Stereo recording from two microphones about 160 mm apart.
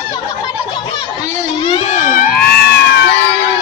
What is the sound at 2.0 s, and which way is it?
Music, 60° left (ahead or behind).